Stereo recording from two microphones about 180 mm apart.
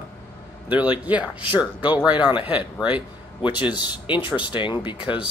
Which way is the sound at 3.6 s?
25° left (ahead or behind).